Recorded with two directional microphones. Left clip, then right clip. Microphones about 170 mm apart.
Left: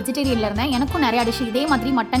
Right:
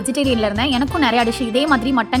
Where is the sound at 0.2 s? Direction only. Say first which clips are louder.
Right 4 dB; 15° right (ahead or behind).